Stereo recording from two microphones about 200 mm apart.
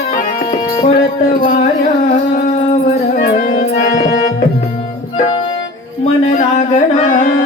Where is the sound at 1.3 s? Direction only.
40° left (ahead or behind).